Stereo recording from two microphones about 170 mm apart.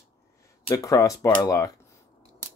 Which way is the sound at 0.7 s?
20° left (ahead or behind).